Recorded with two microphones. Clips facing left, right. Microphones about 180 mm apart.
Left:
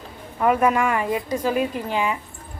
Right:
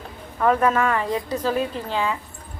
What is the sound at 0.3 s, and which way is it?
Speech, 15° left (ahead or behind).